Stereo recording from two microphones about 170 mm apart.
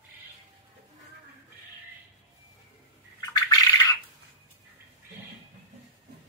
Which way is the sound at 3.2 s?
20° left (ahead or behind).